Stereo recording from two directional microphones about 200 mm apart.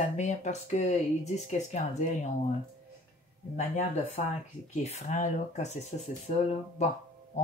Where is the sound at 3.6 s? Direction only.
35° left (ahead or behind).